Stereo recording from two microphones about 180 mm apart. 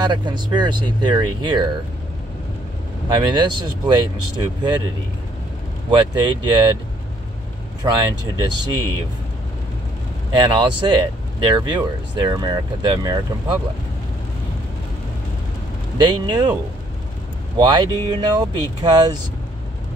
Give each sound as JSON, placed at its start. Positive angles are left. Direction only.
{"t": 0.0, "sound": "speech", "side_deg": -25}
{"t": 3.1, "sound": "speech", "side_deg": -25}
{"t": 5.9, "sound": "speech", "side_deg": -25}
{"t": 7.8, "sound": "speech", "side_deg": -20}
{"t": 10.3, "sound": "speech", "side_deg": -25}
{"t": 16.0, "sound": "speech", "side_deg": -25}
{"t": 17.6, "sound": "speech", "side_deg": -25}